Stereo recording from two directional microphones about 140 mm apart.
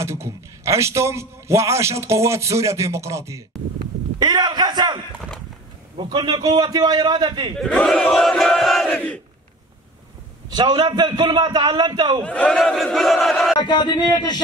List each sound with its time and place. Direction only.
0.0 s a man's voice: 20° right (ahead or behind)
4.2 s a sound: 30° right (ahead or behind)
5.9 s a man's voice: 35° right (ahead or behind)
7.5 s battle cry: 5° left (ahead or behind)
10.5 s a man's voice: 30° right (ahead or behind)
12.2 s battle cry: 10° left (ahead or behind)
13.6 s a man's voice: 30° left (ahead or behind)